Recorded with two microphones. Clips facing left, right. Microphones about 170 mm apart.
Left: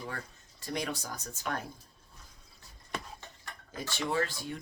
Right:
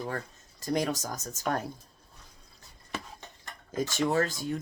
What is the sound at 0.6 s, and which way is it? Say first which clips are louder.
Speech: right 7 dB; 40° right (ahead or behind).